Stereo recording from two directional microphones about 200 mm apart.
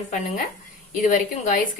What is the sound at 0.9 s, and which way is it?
Speech, 40° left (ahead or behind).